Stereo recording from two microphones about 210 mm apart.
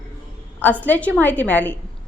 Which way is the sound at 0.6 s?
10° left (ahead or behind).